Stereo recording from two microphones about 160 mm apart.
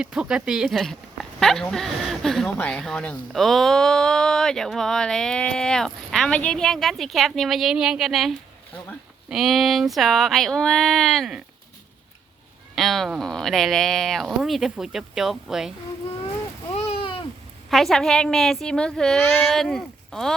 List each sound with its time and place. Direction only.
0.0 s speech: 5° right (ahead or behind)
12.7 s speech: centre (ahead or behind)
16.7 s a sound: 35° left (ahead or behind)
17.7 s speech: centre (ahead or behind)